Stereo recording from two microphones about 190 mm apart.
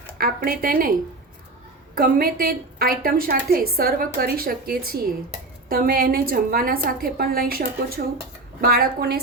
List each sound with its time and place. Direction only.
0.2 s a woman's voice: 50° right (ahead or behind)
2.0 s a woman's voice: 50° right (ahead or behind)